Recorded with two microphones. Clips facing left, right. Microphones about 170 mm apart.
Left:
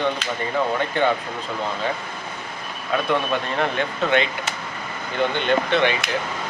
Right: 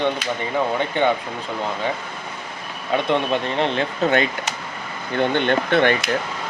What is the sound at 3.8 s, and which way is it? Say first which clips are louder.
Speech: right 1 dB; 40° right (ahead or behind).